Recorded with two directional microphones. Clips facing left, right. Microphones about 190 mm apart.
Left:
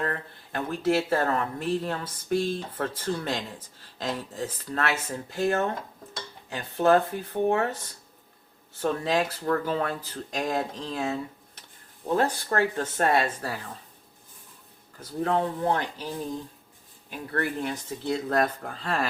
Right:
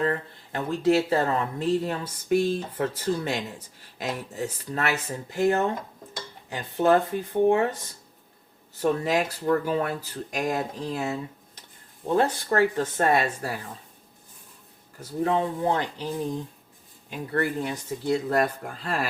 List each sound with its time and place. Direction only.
0.0 s speech: 20° right (ahead or behind)
8.8 s speech: 10° right (ahead or behind)
14.9 s speech: 15° right (ahead or behind)
17.1 s speech: 10° right (ahead or behind)